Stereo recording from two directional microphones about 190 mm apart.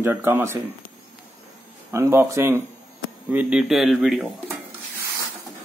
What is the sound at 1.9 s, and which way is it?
Speech, 15° right (ahead or behind).